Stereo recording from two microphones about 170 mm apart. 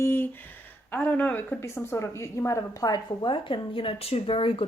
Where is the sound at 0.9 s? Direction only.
10° left (ahead or behind).